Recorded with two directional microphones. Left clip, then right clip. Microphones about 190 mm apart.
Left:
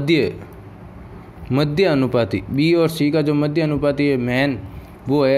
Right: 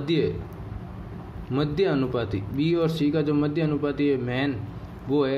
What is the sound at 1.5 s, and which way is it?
Speech, 30° left (ahead or behind).